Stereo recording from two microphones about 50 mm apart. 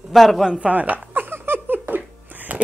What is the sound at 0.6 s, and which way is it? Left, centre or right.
Speech, right.